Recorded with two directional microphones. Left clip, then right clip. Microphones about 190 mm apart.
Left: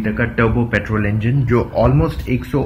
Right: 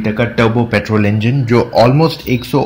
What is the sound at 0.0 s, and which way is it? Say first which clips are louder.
Speech: right 4 dB; 45° right (ahead or behind).